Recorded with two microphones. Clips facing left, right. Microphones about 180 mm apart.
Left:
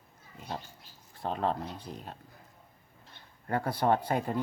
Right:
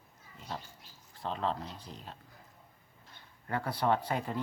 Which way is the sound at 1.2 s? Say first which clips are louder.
Left 3 dB; 50° left (ahead or behind).